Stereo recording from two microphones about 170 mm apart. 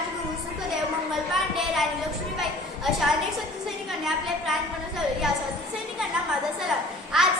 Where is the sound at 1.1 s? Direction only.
Centre (ahead or behind).